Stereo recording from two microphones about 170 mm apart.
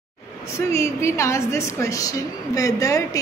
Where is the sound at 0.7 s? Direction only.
15° left (ahead or behind).